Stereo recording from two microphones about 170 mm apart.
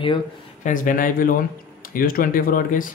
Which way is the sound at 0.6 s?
50° left (ahead or behind).